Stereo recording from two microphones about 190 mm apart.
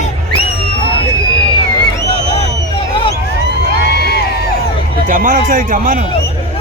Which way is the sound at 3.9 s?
60° left (ahead or behind).